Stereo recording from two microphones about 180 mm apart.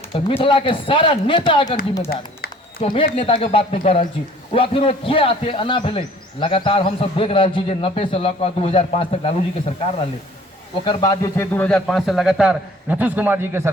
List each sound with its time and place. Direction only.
0.1 s speech: 30° left (ahead or behind)
2.8 s a man's voice: 30° left (ahead or behind)
10.8 s a man's voice: 20° left (ahead or behind); by 13.6 s 10° right (ahead or behind)